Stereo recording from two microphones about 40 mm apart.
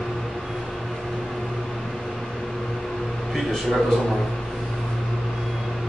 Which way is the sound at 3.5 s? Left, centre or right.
Centre.